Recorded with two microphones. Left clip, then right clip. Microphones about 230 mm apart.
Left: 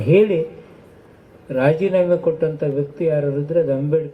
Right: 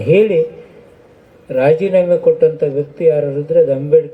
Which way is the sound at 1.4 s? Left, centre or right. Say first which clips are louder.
Right 5 dB; right.